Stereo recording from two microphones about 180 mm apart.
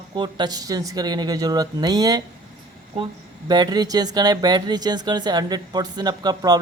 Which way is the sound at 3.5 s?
20° right (ahead or behind).